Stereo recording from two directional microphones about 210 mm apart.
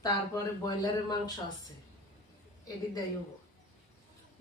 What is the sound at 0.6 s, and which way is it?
Speech, 20° left (ahead or behind).